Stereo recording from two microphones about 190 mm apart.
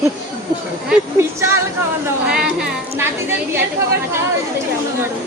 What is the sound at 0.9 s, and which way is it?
A woman's voice, 15° right (ahead or behind).